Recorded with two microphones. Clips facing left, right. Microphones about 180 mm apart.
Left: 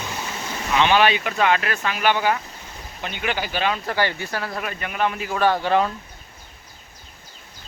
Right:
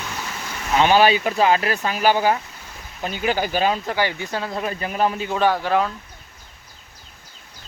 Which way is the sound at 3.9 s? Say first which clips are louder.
Right 1 dB; 15° right (ahead or behind).